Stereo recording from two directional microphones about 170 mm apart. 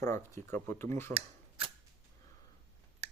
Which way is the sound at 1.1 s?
35° right (ahead or behind).